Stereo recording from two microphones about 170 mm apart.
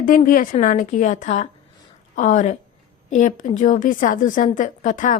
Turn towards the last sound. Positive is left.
turn(degrees=50)  # may be behind; listen again after turning